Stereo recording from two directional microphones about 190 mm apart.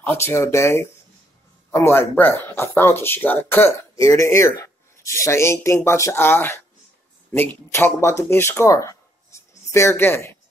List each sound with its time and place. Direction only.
0.0 s speech: 10° left (ahead or behind)